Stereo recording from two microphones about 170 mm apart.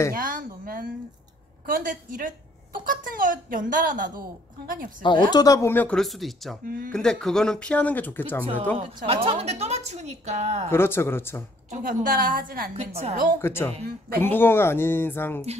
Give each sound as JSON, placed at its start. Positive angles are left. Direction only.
{"t": 0.1, "sound": "a sound", "side_deg": -55}
{"t": 1.7, "sound": "a woman's voice", "side_deg": -55}
{"t": 5.0, "sound": "speech", "side_deg": 25}
{"t": 8.7, "sound": "a woman's voice", "side_deg": -35}
{"t": 10.7, "sound": "speech", "side_deg": 15}
{"t": 11.7, "sound": "a woman's voice", "side_deg": -50}
{"t": 12.7, "sound": "a woman's voice", "side_deg": -40}
{"t": 13.4, "sound": "speech", "side_deg": 15}
{"t": 13.8, "sound": "speech", "side_deg": -65}
{"t": 14.2, "sound": "speech", "side_deg": 10}